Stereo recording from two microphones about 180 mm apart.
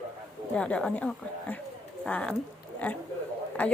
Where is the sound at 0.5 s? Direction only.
5° left (ahead or behind).